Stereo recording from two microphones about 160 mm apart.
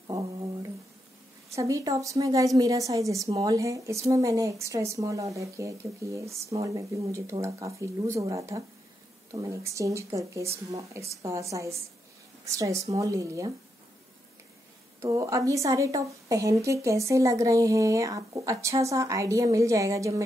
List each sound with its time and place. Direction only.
1.5 s a woman's voice: 20° right (ahead or behind)
15.0 s a woman's voice: 20° right (ahead or behind)